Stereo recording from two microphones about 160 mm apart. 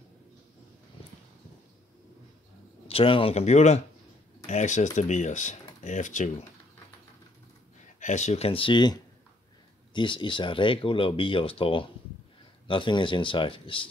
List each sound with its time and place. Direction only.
2.9 s speech: 35° left (ahead or behind); by 6.4 s 50° left (ahead or behind)
8.0 s speech: 50° left (ahead or behind); by 13.8 s 30° left (ahead or behind)